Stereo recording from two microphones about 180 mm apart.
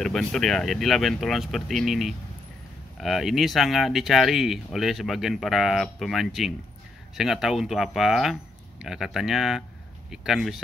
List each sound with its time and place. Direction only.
0.0 s speech: 5° left (ahead or behind)